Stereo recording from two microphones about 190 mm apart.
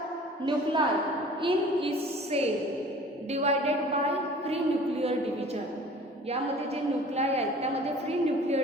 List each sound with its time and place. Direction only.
0.4 s a woman's voice: 25° right (ahead or behind)
7.2 s a woman's voice: 35° right (ahead or behind)